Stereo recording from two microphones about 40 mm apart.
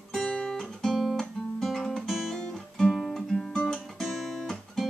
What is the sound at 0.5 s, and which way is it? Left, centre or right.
Guitar, centre.